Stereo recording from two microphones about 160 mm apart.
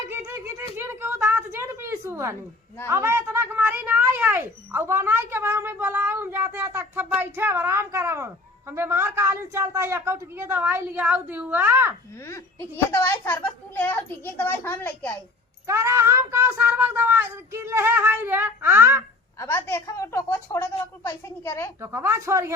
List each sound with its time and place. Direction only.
0.1 s a sound: 15° right (ahead or behind)
2.8 s speech: 15° right (ahead or behind)
12.2 s a woman's voice: 15° left (ahead or behind)
15.6 s speech: 15° right (ahead or behind)
19.4 s a woman's voice: 15° left (ahead or behind)
21.8 s speech: 15° right (ahead or behind)